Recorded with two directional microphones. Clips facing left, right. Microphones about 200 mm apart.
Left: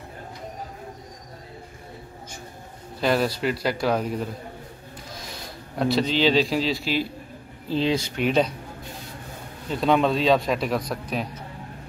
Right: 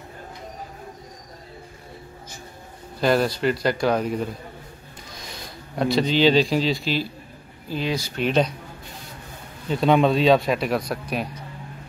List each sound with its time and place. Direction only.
3.0 s a man's voice: centre (ahead or behind)
5.8 s a man's voice: centre (ahead or behind)
7.7 s speech: 25° left (ahead or behind)
8.2 s speech: 10° left (ahead or behind)
9.7 s a man's voice: centre (ahead or behind)